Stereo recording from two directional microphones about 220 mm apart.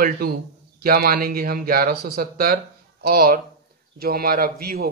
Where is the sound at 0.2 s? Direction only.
45° right (ahead or behind).